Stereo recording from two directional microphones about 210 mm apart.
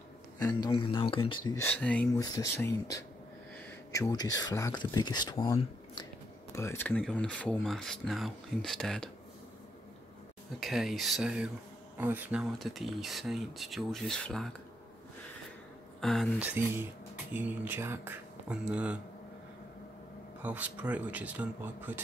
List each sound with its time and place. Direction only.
0.4 s speech: 20° left (ahead or behind)
2.2 s speech: 15° left (ahead or behind)
10.6 s speech: centre (ahead or behind)
16.0 s speech: centre (ahead or behind)
20.4 s speech: 5° right (ahead or behind)